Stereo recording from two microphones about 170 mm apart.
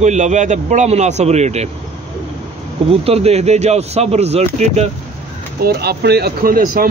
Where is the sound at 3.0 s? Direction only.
35° right (ahead or behind).